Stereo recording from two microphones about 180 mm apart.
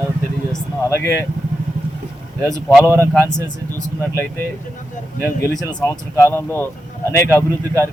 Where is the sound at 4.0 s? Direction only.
10° left (ahead or behind).